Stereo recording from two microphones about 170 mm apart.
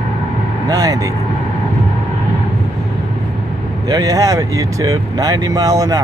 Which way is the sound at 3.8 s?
20° right (ahead or behind).